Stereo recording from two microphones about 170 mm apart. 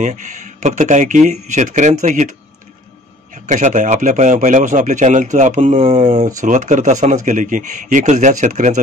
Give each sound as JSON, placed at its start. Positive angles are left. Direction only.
{"t": 0.0, "sound": "speech", "side_deg": -50}
{"t": 3.4, "sound": "speech", "side_deg": -45}